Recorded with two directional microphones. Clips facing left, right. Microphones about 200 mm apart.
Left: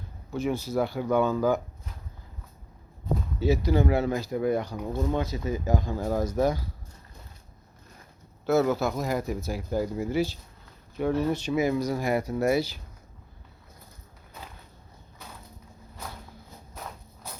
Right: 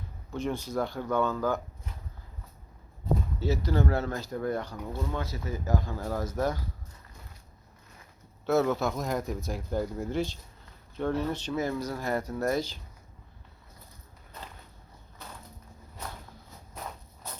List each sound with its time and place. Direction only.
0.3 s speech: 5° left (ahead or behind)
3.4 s speech: 10° left (ahead or behind)
8.4 s speech: centre (ahead or behind)
16.8 s a sound: 5° left (ahead or behind)